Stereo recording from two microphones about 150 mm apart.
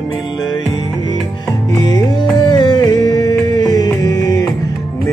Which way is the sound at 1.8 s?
30° left (ahead or behind).